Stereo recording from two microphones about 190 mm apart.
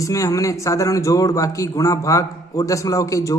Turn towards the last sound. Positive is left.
turn(degrees=15)  # may be behind; listen again after turning